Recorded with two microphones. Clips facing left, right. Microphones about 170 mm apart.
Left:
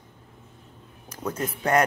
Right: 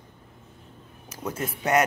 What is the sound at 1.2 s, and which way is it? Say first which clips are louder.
Speech: left 2 dB; 10° right (ahead or behind).